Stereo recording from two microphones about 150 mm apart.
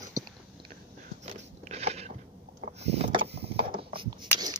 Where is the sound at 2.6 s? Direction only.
45° right (ahead or behind).